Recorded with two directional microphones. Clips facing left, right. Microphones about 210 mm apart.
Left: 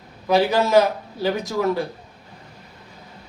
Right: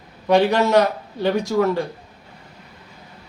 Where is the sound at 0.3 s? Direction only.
5° left (ahead or behind).